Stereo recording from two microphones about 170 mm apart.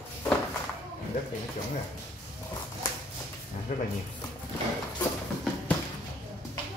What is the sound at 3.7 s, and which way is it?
Speech, 50° left (ahead or behind).